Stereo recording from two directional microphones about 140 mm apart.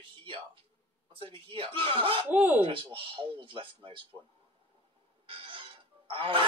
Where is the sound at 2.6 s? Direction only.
40° right (ahead or behind).